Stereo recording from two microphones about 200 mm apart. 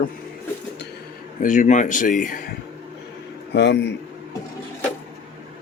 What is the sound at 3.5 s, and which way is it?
Speech, 60° left (ahead or behind).